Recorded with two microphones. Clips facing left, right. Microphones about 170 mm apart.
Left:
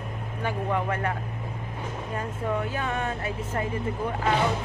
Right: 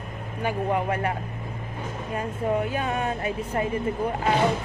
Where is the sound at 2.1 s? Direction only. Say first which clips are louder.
Right 4 dB; 15° right (ahead or behind).